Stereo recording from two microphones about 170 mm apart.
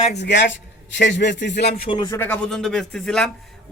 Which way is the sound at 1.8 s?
30° left (ahead or behind).